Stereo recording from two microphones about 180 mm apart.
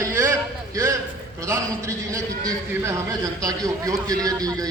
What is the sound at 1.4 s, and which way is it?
A man's voice, 15° right (ahead or behind).